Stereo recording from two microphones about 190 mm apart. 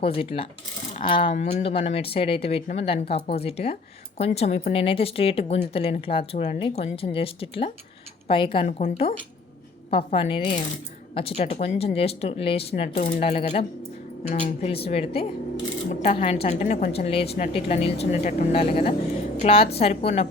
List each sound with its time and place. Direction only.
0.0 s speech: 30° left (ahead or behind)